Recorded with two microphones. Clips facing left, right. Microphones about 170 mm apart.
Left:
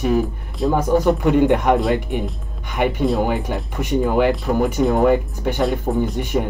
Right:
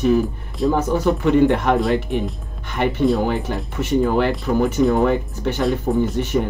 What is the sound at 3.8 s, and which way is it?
Speech, 15° left (ahead or behind).